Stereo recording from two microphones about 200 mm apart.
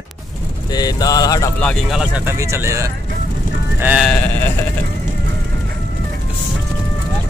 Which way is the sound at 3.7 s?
10° right (ahead or behind).